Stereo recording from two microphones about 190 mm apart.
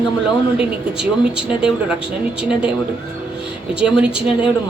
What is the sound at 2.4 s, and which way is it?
Speech, 5° right (ahead or behind).